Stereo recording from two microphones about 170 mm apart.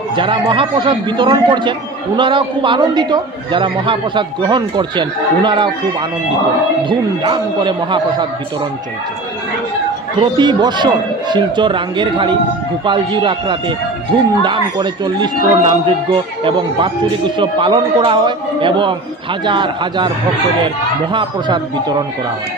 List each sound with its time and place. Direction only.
0.1 s a man's voice: 30° right (ahead or behind)
6.8 s a man's voice: 30° right (ahead or behind)
10.3 s a man's voice: 25° right (ahead or behind)
21.1 s a man's voice: 25° right (ahead or behind)